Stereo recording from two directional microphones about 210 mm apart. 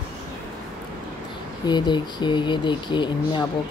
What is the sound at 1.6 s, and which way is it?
Speech, 20° left (ahead or behind).